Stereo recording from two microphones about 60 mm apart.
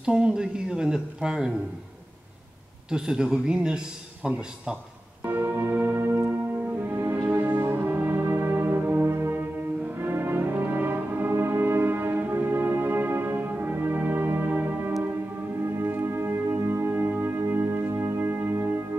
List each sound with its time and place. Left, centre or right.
0.0 s speech: centre
2.9 s speech: centre
5.2 s organ: right
6.8 s music: right
7.2 s music: right
9.9 s brass instrument: right
15.6 s music: right